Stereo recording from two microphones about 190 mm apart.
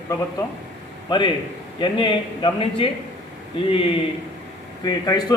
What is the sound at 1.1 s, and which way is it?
A man's voice, 25° left (ahead or behind).